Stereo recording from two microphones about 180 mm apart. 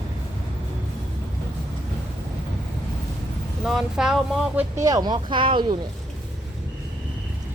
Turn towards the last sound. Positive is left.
turn(degrees=-25)  # may be behind; listen again after turning